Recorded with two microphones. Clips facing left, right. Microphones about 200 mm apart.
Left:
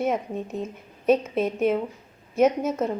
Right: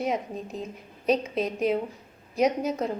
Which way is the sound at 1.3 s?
5° left (ahead or behind).